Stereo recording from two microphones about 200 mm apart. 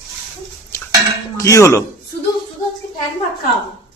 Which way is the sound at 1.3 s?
15° left (ahead or behind).